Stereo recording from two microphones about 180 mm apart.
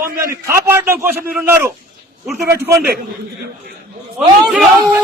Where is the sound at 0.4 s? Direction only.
15° right (ahead or behind).